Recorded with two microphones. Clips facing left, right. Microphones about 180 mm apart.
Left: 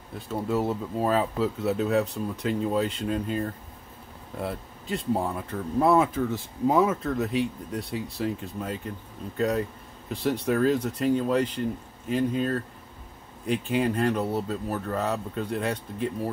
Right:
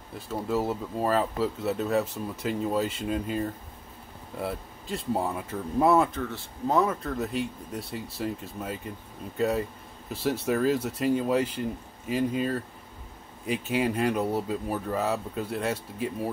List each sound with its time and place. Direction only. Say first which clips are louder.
0.3 s speech: left 1 dB; centre (ahead or behind)
6.2 s speech: left 5 dB; 10° left (ahead or behind)